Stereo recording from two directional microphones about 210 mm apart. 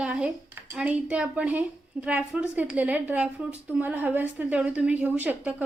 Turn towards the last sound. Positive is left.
turn(degrees=-10)  # may be behind; listen again after turning